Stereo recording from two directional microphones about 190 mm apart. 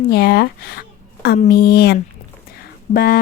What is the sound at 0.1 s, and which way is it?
Speech, 55° left (ahead or behind).